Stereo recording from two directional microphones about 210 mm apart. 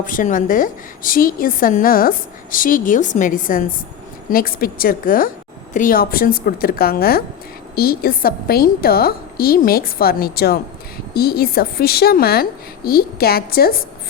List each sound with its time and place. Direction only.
0.0 s a woman's voice: 40° left (ahead or behind)